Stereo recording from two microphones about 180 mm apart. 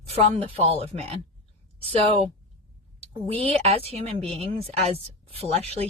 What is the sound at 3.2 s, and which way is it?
A woman's voice, 35° right (ahead or behind).